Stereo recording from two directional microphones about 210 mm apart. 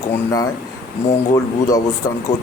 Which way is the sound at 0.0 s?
15° left (ahead or behind).